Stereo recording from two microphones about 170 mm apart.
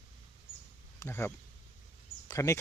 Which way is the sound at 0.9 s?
15° left (ahead or behind).